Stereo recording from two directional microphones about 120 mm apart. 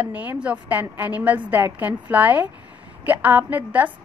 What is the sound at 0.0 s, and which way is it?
A woman's voice, 15° right (ahead or behind).